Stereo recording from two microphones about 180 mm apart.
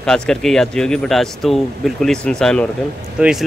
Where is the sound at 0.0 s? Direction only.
5° left (ahead or behind).